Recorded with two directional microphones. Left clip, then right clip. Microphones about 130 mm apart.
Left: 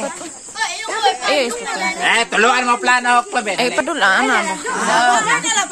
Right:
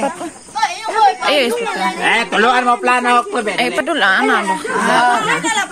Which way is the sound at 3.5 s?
10° left (ahead or behind).